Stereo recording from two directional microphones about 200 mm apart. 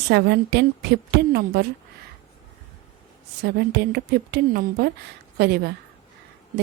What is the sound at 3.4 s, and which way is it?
A woman's voice, 55° right (ahead or behind).